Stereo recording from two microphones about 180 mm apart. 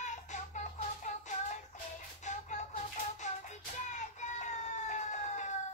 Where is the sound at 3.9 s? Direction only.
40° left (ahead or behind).